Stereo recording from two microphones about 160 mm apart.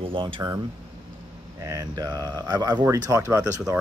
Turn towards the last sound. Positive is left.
turn(degrees=-20)  # may be behind; listen again after turning